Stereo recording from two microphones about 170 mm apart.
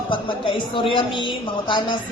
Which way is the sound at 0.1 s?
30° left (ahead or behind).